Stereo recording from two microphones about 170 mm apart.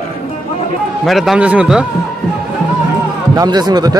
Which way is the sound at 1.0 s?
Centre (ahead or behind).